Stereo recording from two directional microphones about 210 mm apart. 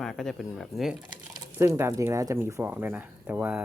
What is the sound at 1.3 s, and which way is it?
Speech, 15° right (ahead or behind).